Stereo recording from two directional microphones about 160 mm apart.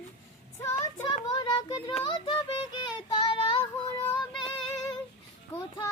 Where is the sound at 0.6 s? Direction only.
15° left (ahead or behind).